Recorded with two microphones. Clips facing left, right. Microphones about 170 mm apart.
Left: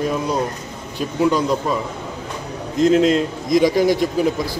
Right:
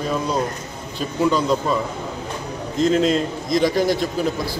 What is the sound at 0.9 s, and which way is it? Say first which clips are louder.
Speech: left 2 dB; 10° left (ahead or behind).